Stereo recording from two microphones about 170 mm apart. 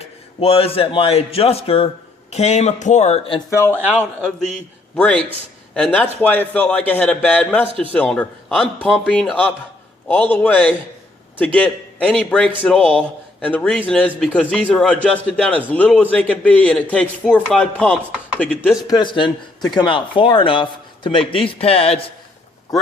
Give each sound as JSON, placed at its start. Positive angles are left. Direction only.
{"t": 0.0, "sound": "a man's voice", "side_deg": 35}
{"t": 3.5, "sound": "a man's voice", "side_deg": 15}
{"t": 3.9, "sound": "a man's voice", "side_deg": 5}
{"t": 18.9, "sound": "speech", "side_deg": 25}